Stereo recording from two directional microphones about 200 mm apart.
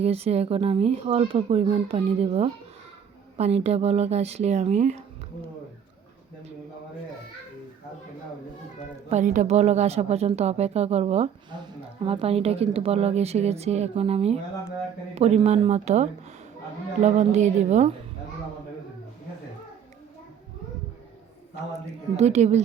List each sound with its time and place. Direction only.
0.0 s speech: 30° right (ahead or behind)
9.0 s speech: 35° right (ahead or behind)
22.2 s speech: 35° right (ahead or behind)